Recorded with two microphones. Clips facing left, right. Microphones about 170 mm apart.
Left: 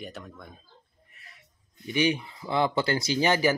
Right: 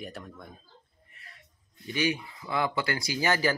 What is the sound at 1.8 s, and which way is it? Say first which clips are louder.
Speech: left 4 dB; 20° left (ahead or behind).